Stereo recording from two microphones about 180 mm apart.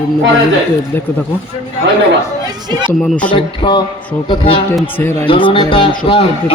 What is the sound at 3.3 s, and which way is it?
A man's voice, 25° left (ahead or behind).